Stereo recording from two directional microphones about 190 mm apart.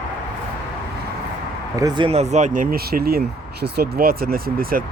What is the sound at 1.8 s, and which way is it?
Speech, 30° right (ahead or behind).